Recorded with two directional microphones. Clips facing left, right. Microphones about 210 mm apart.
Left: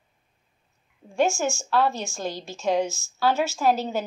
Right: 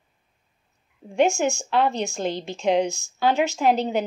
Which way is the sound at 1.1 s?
20° right (ahead or behind).